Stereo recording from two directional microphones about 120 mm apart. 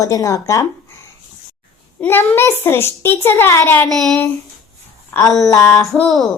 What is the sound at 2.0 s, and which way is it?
Speech, 20° left (ahead or behind).